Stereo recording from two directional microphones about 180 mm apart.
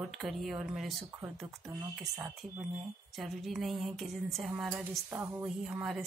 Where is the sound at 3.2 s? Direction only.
Centre (ahead or behind).